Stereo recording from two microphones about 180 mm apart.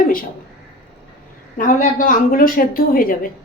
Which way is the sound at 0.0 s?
50° left (ahead or behind).